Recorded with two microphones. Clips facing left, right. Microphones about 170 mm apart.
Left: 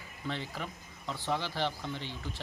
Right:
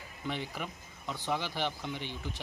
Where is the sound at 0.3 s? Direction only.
15° right (ahead or behind).